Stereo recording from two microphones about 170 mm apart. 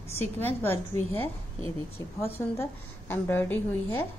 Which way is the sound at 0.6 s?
10° left (ahead or behind).